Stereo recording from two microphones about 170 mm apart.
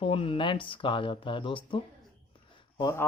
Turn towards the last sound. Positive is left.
turn(degrees=20)  # may be behind; listen again after turning